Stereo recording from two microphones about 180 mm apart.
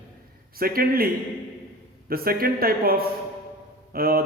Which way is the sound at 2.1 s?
55° right (ahead or behind).